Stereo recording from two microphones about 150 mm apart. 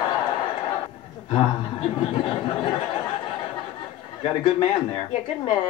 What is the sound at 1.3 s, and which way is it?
Speech, 35° left (ahead or behind).